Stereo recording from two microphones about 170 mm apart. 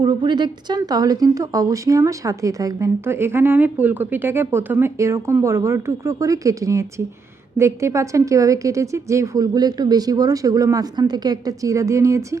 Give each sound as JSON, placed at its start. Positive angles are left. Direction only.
{"t": 0.0, "sound": "a woman's voice", "side_deg": -25}